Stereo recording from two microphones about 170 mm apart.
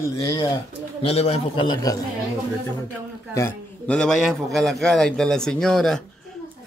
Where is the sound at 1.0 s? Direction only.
35° left (ahead or behind).